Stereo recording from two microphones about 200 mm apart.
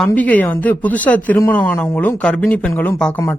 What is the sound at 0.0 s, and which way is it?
Speech, 5° left (ahead or behind).